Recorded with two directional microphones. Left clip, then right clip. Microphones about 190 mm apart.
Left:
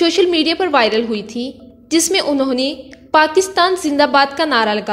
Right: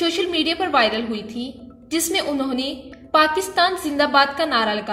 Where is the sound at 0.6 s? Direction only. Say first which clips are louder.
Left 3 dB; 45° left (ahead or behind).